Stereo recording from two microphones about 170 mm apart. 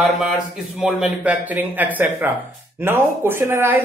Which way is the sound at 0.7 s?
5° right (ahead or behind).